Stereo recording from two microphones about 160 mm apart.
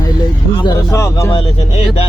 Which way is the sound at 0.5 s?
30° left (ahead or behind).